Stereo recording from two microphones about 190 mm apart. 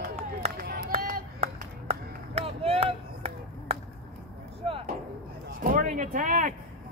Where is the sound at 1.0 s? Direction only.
50° right (ahead or behind).